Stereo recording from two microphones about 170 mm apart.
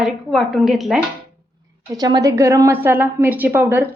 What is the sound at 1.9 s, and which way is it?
A woman's voice, 20° right (ahead or behind).